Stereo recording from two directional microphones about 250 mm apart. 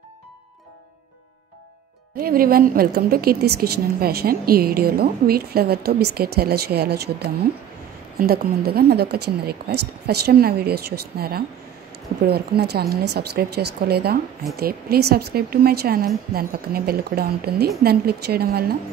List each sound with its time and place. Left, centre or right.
2.1 s a woman's voice: right